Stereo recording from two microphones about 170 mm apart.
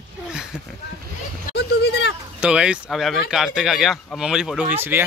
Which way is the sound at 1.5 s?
75° left (ahead or behind).